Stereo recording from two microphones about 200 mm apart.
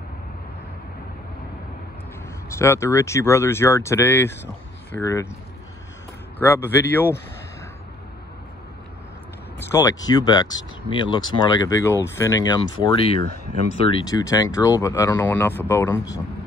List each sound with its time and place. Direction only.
2.5 s speech: 15° left (ahead or behind)
6.3 s speech: 10° left (ahead or behind)
9.6 s a sound: 15° left (ahead or behind)
10.0 s speech: 20° left (ahead or behind)